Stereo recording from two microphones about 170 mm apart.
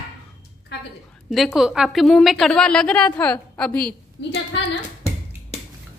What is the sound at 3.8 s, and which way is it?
Speech, 90° left.